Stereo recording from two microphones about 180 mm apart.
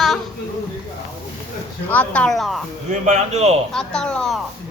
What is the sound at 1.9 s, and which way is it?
Speech, 5° left (ahead or behind).